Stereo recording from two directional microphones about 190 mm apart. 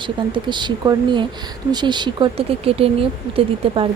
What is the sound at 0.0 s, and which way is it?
A woman's voice, 25° right (ahead or behind).